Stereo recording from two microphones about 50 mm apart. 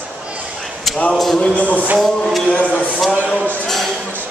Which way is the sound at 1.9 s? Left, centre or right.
Centre.